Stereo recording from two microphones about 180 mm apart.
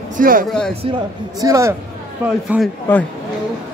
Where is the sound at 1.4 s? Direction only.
15° right (ahead or behind).